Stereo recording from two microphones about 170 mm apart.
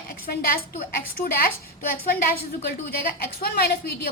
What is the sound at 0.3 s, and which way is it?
A woman's voice, 60° left (ahead or behind).